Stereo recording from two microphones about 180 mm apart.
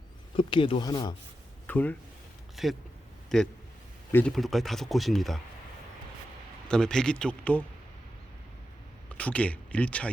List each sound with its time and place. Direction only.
0.3 s speech: 30° left (ahead or behind)
1.6 s speech: 10° left (ahead or behind)
2.6 s a man's voice: centre (ahead or behind)
6.7 s speech: 5° left (ahead or behind)
9.0 s speech: 10° left (ahead or behind)